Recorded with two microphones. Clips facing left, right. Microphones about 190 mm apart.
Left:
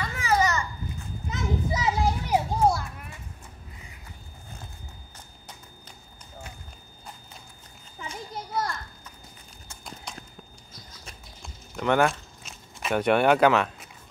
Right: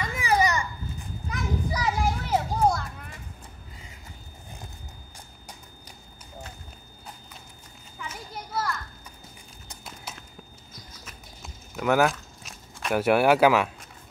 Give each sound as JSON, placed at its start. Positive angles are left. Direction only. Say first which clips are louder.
{"t": 0.1, "sound": "babbling", "louder": "right 1 dB", "side_deg": -15}
{"t": 1.3, "sound": "children playing", "louder": "left 1 dB", "side_deg": 20}
{"t": 8.0, "sound": "children playing", "louder": "left 2 dB", "side_deg": 30}
{"t": 10.1, "sound": "a sound", "louder": "left 1 dB", "side_deg": -5}
{"t": 11.4, "sound": "walk", "louder": "right 1 dB", "side_deg": -5}